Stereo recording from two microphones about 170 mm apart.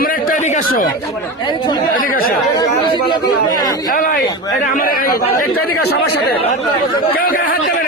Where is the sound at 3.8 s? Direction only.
55° left (ahead or behind).